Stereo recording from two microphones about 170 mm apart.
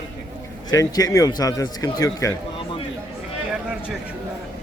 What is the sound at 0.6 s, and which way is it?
A man's voice, 20° left (ahead or behind).